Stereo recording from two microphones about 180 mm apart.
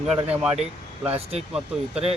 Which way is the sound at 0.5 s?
35° right (ahead or behind).